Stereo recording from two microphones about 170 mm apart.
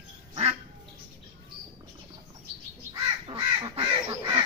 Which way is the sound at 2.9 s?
30° right (ahead or behind).